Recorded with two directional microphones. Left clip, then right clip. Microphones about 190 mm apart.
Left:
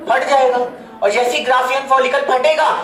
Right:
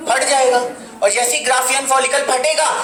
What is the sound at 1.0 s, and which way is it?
Speech, 40° right (ahead or behind).